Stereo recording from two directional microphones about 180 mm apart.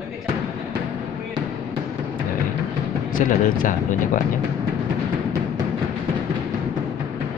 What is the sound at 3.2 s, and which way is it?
Speech, 50° left (ahead or behind).